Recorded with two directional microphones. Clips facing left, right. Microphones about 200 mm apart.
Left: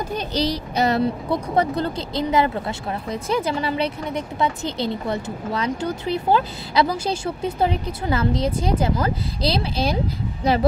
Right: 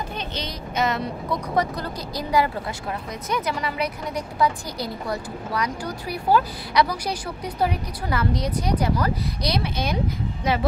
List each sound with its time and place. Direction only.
0.1 s speech: 35° left (ahead or behind)